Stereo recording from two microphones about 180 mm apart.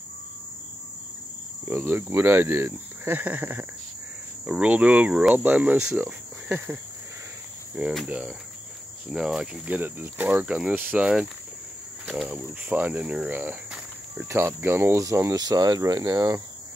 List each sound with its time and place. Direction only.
1.7 s speech: 10° right (ahead or behind)
7.9 s cricket: 5° right (ahead or behind)
9.1 s speech: 5° right (ahead or behind)
12.1 s cricket: 5° right (ahead or behind)
14.3 s speech: 15° right (ahead or behind)